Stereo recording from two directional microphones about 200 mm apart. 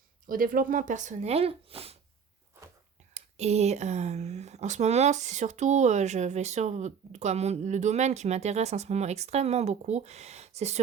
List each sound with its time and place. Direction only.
0.3 s speech: 45° right (ahead or behind)
3.2 s speech: 30° right (ahead or behind)